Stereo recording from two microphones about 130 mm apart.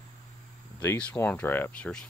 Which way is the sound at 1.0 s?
10° left (ahead or behind).